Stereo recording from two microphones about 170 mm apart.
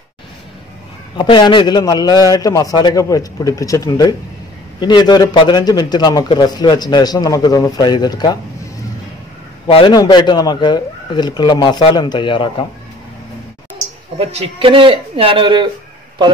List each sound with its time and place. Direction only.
1.1 s a man's voice: 30° left (ahead or behind)
9.7 s a man's voice: 35° left (ahead or behind)
14.1 s speech: 35° right (ahead or behind)